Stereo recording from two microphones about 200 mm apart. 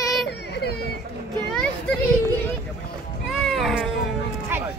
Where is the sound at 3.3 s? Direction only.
Centre (ahead or behind).